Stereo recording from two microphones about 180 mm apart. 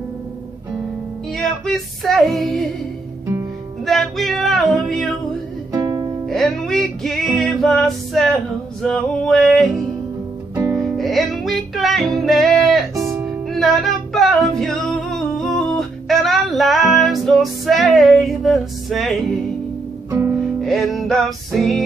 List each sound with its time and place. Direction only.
1.4 s female singing: centre (ahead or behind)
3.8 s a sound: centre (ahead or behind)
5.7 s music: 15° right (ahead or behind)
6.2 s music: centre (ahead or behind)
10.5 s music: 15° right (ahead or behind)
10.8 s music: centre (ahead or behind)
20.1 s music: 15° right (ahead or behind)
20.6 s music: centre (ahead or behind)